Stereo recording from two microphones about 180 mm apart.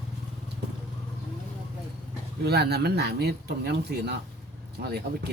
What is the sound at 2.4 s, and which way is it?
Speech, 65° right (ahead or behind).